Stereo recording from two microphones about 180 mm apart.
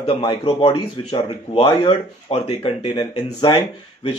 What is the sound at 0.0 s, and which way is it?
Speech, 30° left (ahead or behind).